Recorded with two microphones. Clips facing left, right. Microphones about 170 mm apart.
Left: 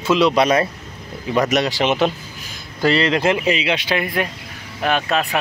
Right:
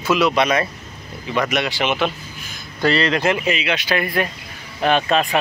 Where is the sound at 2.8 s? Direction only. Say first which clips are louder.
Left 1 dB; 20° left (ahead or behind).